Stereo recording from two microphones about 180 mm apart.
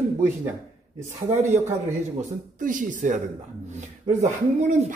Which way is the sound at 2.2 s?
45° right (ahead or behind).